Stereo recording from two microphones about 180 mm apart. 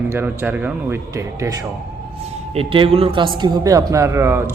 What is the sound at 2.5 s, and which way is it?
A man's voice, 30° right (ahead or behind).